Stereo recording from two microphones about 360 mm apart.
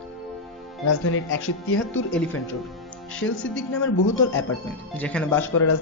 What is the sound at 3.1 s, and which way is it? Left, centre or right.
Speech, left.